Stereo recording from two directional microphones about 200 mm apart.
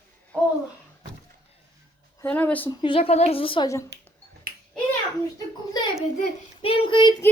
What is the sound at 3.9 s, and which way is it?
Finger snapping, 55° right (ahead or behind).